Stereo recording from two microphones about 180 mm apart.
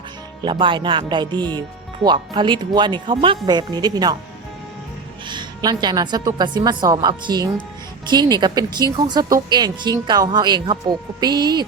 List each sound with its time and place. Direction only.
0.4 s speech: 25° right (ahead or behind)
5.3 s speech: 25° right (ahead or behind)